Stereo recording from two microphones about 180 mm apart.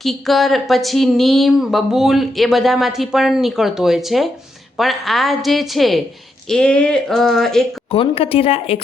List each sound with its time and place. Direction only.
0.0 s speech: centre (ahead or behind)
7.9 s speech: 30° left (ahead or behind)